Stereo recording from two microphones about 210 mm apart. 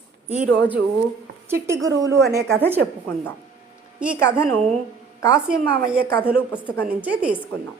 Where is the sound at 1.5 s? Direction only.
10° right (ahead or behind).